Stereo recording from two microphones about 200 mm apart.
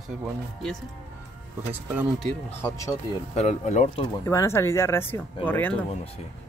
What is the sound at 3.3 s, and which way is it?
Speech, 35° left (ahead or behind).